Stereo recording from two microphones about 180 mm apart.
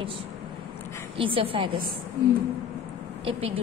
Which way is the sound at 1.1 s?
30° right (ahead or behind).